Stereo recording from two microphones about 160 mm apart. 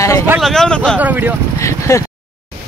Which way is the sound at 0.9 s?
10° right (ahead or behind).